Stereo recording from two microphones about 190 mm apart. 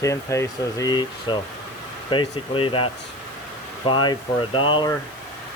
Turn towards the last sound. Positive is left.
turn(degrees=25)  # may be behind; listen again after turning